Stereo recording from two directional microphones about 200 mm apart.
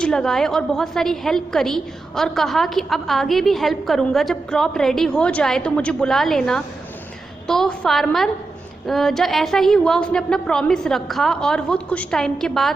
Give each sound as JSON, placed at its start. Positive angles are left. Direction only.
{"t": 0.0, "sound": "a woman's voice", "side_deg": 5}